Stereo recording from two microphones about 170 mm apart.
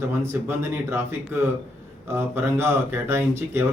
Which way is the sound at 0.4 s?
15° right (ahead or behind).